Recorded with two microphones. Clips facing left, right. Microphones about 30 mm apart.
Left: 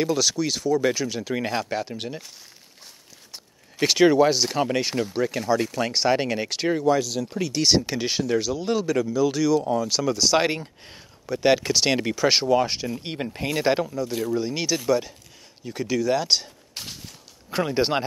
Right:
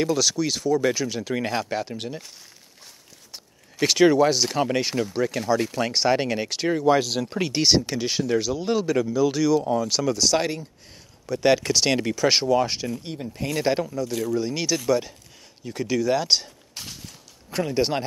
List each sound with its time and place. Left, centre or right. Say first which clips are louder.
0.0 s speech: even; centre
3.8 s speech: even; centre
7.0 s speech: right 1 dB; right
7.8 s speech: even; centre
10.4 s speech: left 3 dB; left
11.2 s speech: even; centre
13.0 s speech: left 3 dB; left
13.6 s speech: left 1 dB; centre
16.7 s a sound: left 1 dB; centre
17.5 s speech: left 1 dB; centre